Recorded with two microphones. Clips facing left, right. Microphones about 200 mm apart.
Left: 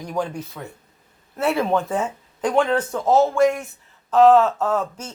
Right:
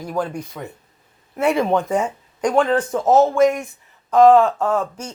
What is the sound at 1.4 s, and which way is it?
Speech, 15° right (ahead or behind).